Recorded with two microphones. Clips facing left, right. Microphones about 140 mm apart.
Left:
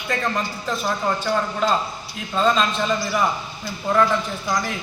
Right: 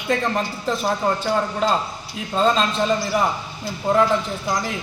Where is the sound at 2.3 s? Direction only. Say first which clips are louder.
Right 1 dB; 30° right (ahead or behind).